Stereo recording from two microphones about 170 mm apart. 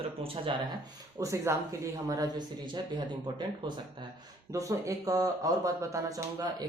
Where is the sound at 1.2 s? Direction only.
20° right (ahead or behind).